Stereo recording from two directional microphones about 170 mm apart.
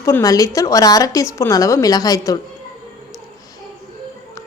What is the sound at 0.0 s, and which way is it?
A woman's voice, 20° left (ahead or behind).